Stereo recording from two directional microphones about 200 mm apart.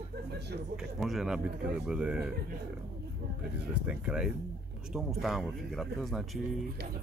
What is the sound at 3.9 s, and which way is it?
Speech, 5° right (ahead or behind).